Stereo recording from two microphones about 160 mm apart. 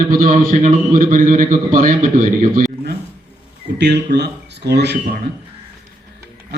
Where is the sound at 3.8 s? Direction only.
90° right.